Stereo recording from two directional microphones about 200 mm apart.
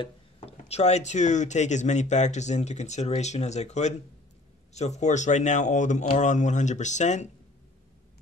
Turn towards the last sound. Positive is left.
turn(degrees=35)  # may be behind; listen again after turning